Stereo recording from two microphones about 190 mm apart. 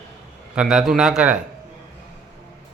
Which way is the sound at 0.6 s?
5° right (ahead or behind).